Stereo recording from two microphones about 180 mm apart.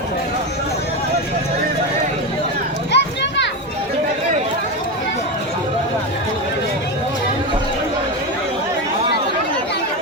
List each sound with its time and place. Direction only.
2.9 s children playing: 80° left